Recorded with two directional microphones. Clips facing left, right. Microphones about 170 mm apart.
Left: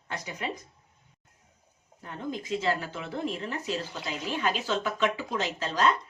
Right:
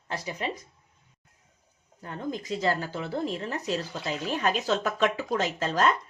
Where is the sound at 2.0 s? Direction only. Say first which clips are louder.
Right 2 dB; 40° right (ahead or behind).